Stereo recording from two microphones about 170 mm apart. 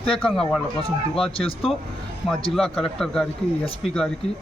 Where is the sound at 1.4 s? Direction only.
35° left (ahead or behind).